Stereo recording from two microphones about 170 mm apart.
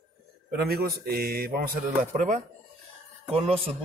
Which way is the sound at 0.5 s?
65° right (ahead or behind).